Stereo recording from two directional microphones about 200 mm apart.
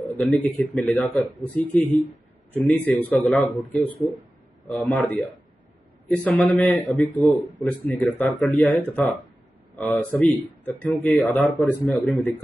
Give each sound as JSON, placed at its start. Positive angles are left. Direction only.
{"t": 0.0, "sound": "a man's voice", "side_deg": 10}
{"t": 10.1, "sound": "a man's voice", "side_deg": 10}